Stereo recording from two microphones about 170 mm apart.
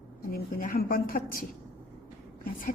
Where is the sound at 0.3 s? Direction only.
60° left (ahead or behind).